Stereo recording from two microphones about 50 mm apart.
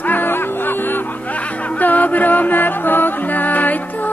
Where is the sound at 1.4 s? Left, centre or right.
Left.